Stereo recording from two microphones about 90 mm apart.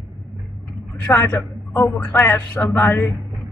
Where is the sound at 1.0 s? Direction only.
25° left (ahead or behind).